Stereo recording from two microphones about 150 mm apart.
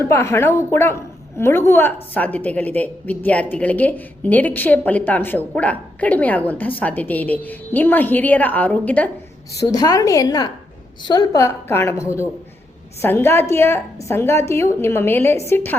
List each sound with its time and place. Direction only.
0.0 s a woman's voice: 20° left (ahead or behind)
9.6 s a woman's voice: 25° left (ahead or behind)